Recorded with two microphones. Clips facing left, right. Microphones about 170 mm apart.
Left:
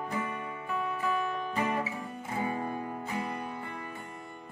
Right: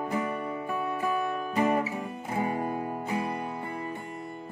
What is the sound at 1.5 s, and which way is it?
Guitar, 35° right (ahead or behind).